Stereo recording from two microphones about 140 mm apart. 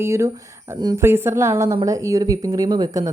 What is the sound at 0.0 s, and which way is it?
Speech, 20° right (ahead or behind).